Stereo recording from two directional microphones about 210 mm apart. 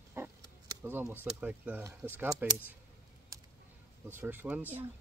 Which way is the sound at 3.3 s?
15° right (ahead or behind).